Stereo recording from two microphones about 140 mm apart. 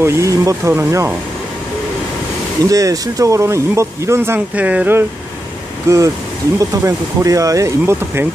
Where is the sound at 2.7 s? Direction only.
25° right (ahead or behind).